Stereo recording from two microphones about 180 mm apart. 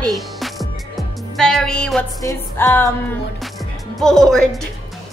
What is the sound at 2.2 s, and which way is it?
Speech, 20° left (ahead or behind).